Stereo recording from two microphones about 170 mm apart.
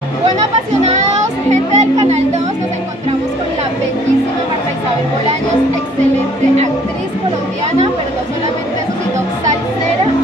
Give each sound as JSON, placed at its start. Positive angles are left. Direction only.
{"t": 1.5, "sound": "music", "side_deg": -40}